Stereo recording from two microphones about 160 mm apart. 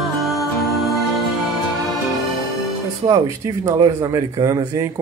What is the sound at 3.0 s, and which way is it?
Speech, 20° right (ahead or behind).